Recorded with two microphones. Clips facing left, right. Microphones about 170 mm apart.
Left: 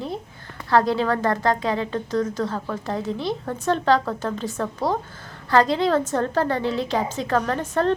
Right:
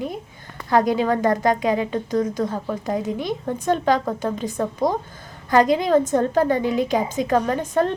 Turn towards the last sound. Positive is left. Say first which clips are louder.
# right 3 dB
turn(degrees=-10)  # may be behind; listen again after turning